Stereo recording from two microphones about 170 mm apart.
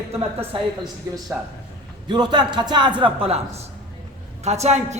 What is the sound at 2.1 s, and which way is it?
A man's voice, 25° right (ahead or behind).